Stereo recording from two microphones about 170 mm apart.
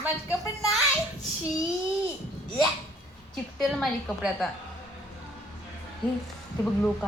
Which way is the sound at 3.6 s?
Centre (ahead or behind).